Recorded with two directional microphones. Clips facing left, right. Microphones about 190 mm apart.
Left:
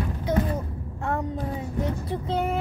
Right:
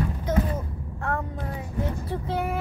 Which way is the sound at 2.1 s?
20° left (ahead or behind).